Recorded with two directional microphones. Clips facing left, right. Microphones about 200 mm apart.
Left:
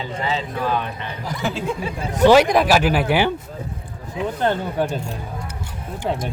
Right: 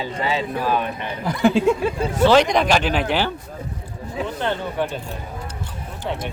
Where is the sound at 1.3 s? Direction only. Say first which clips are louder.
Right 9 dB; 55° right (ahead or behind).